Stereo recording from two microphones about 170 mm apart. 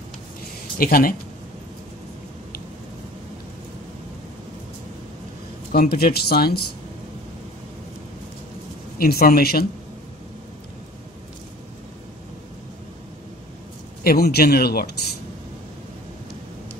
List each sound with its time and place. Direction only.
0.7 s speech: 60° left (ahead or behind)
5.7 s speech: 65° left (ahead or behind)
8.9 s speech: 60° left (ahead or behind)
14.0 s speech: 65° left (ahead or behind)